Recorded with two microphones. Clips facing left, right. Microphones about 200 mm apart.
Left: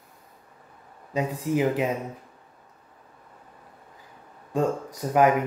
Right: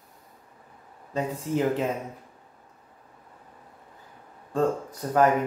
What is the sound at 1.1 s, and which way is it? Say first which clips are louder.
Speech: left 2 dB; 10° left (ahead or behind).